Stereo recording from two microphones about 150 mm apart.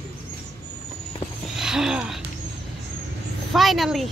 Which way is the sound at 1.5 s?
5° right (ahead or behind).